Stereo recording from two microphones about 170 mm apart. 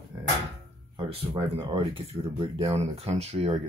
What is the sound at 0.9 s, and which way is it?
Speech, 30° right (ahead or behind).